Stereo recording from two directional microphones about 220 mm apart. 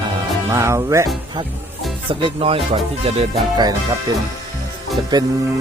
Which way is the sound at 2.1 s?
25° right (ahead or behind).